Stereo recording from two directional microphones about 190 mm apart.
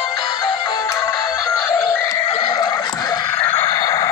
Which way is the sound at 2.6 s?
15° left (ahead or behind).